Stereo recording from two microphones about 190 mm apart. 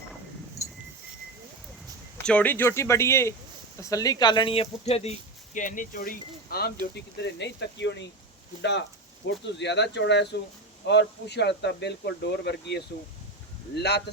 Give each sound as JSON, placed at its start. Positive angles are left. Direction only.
{"t": 0.6, "sound": "a sound", "side_deg": 35}
{"t": 2.1, "sound": "speech", "side_deg": 5}
{"t": 5.5, "sound": "speech", "side_deg": 45}
{"t": 6.9, "sound": "speech", "side_deg": 65}
{"t": 9.2, "sound": "speech", "side_deg": 65}